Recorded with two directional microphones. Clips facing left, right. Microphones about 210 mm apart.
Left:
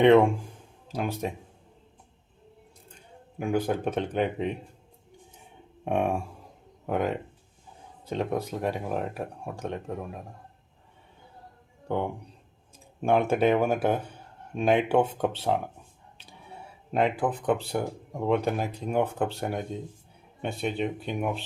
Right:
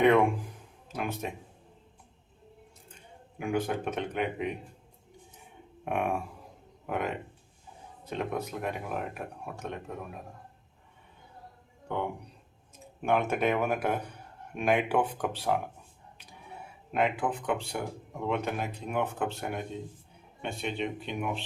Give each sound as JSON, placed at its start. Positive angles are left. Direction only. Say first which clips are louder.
{"t": 0.0, "sound": "speech", "louder": "left 5 dB", "side_deg": 25}
{"t": 3.3, "sound": "speech", "louder": "left 3 dB", "side_deg": 35}
{"t": 5.8, "sound": "speech", "louder": "left 4 dB", "side_deg": 25}
{"t": 8.1, "sound": "speech", "louder": "left 4 dB", "side_deg": 30}
{"t": 11.9, "sound": "speech", "louder": "left 4 dB", "side_deg": 35}
{"t": 16.9, "sound": "speech", "louder": "left 3 dB", "side_deg": 35}